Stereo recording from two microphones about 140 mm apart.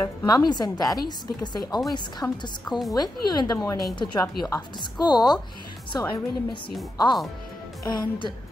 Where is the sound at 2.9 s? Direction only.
30° left (ahead or behind).